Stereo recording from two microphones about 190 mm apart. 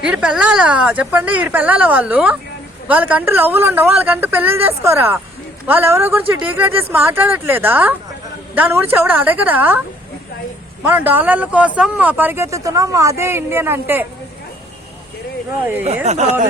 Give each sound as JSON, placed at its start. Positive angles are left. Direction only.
{"t": 0.0, "sound": "speech", "side_deg": -5}
{"t": 10.8, "sound": "speech", "side_deg": -10}
{"t": 15.6, "sound": "speech", "side_deg": -10}
{"t": 16.0, "sound": "speech", "side_deg": -35}